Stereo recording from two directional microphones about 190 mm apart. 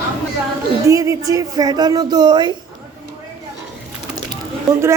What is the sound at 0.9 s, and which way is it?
Speech, 15° right (ahead or behind).